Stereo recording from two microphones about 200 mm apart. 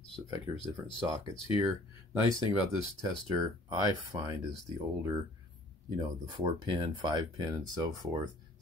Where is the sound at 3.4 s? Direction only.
20° right (ahead or behind).